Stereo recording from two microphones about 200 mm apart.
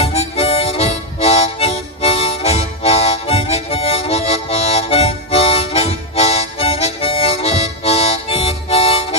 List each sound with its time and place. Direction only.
0.0 s harmonica: 30° left (ahead or behind)